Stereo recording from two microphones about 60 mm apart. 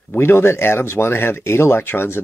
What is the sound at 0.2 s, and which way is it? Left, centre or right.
Speech, left.